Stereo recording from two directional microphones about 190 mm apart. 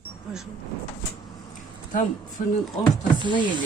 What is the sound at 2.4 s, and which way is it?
Speech, 40° left (ahead or behind).